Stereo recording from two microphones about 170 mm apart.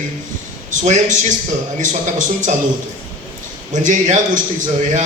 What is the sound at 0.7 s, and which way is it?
Speech, 45° right (ahead or behind).